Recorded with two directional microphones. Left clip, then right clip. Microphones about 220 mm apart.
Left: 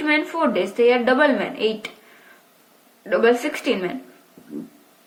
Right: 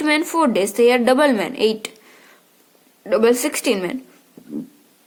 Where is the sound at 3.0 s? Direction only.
25° right (ahead or behind).